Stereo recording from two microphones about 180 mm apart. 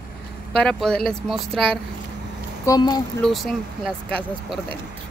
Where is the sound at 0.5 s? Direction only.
5° left (ahead or behind).